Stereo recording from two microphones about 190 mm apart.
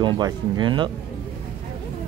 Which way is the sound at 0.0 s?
25° right (ahead or behind).